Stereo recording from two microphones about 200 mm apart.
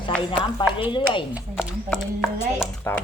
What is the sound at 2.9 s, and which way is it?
Speech, 10° left (ahead or behind).